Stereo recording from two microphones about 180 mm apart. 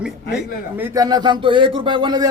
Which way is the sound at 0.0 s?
5° right (ahead or behind).